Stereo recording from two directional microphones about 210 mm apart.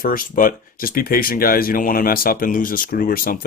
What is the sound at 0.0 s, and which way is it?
Speech, 40° left (ahead or behind).